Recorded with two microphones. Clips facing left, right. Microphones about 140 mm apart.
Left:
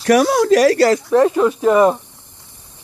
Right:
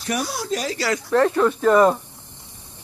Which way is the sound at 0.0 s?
85° left.